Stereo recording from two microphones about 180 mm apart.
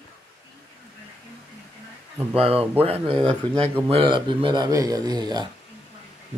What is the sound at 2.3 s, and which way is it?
Speech, 30° right (ahead or behind).